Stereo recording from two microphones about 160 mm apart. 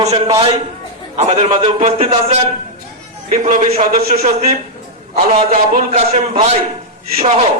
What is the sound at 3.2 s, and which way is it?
A man's voice, 50° right (ahead or behind).